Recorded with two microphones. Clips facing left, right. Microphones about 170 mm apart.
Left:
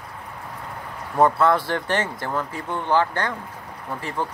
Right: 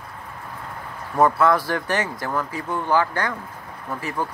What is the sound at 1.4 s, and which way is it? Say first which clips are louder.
Speech: even; 25° left (ahead or behind).